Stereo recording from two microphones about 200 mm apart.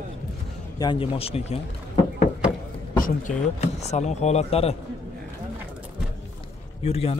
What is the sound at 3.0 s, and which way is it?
Speech, 35° left (ahead or behind).